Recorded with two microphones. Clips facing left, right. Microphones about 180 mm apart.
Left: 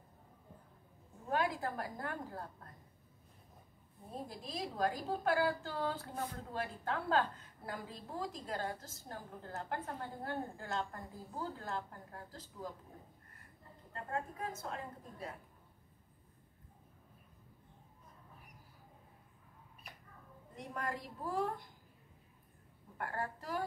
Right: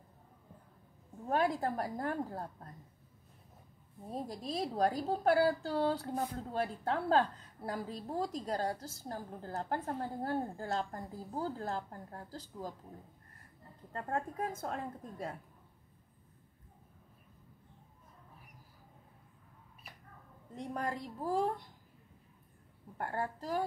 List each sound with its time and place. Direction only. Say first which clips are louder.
1.3 s a woman's voice: right 4 dB; 35° right (ahead or behind)
4.3 s a woman's voice: right 7 dB; 40° right (ahead or behind)
13.9 s a woman's voice: right 4 dB; 45° right (ahead or behind)
20.7 s a woman's voice: right 3 dB; 30° right (ahead or behind)
22.9 s a woman's voice: right 3 dB; 30° right (ahead or behind)